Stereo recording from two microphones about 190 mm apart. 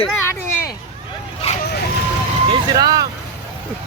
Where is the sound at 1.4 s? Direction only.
30° left (ahead or behind).